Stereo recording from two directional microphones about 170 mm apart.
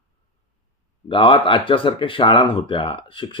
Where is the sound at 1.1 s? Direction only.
30° left (ahead or behind).